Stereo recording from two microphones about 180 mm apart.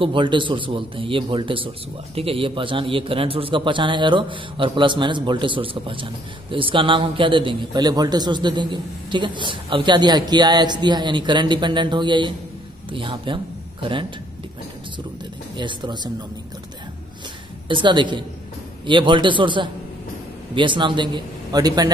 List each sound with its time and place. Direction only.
0.0 s a man's voice: 25° right (ahead or behind)
15.5 s a man's voice: 25° right (ahead or behind)
17.6 s a man's voice: 25° right (ahead or behind)